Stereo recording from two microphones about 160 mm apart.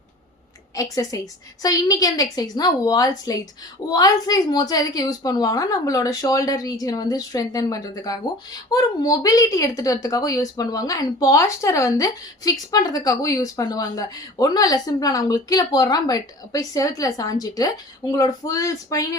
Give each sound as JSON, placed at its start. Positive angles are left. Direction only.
{"t": 0.8, "sound": "a woman's voice", "side_deg": 20}